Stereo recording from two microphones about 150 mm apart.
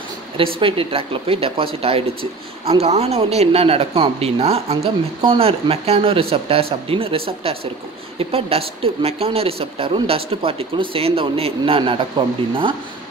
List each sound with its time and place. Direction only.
0.6 s a woman's voice: 35° right (ahead or behind)